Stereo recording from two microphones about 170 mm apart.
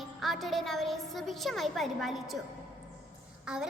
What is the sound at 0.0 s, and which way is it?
A woman's voice, centre (ahead or behind).